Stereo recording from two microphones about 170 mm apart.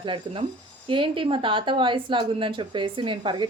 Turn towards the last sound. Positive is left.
turn(degrees=-30)  # may be behind; listen again after turning